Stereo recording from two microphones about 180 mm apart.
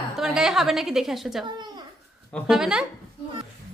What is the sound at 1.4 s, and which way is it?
Speech, 25° right (ahead or behind).